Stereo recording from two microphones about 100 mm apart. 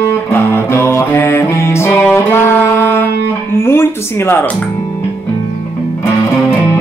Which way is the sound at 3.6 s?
25° left (ahead or behind).